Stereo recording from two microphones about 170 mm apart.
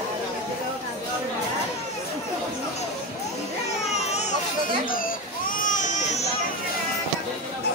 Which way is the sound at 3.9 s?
40° left (ahead or behind).